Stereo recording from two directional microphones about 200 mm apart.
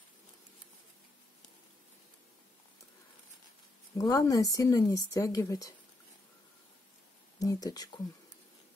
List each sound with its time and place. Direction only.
4.0 s speech: 20° left (ahead or behind)
7.3 s speech: 20° left (ahead or behind)